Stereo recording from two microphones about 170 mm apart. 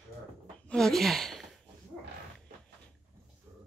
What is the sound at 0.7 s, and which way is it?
Speech, centre (ahead or behind).